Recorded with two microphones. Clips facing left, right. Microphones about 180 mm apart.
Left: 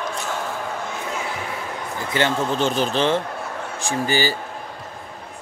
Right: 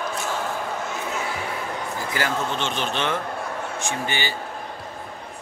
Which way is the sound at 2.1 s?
25° left (ahead or behind).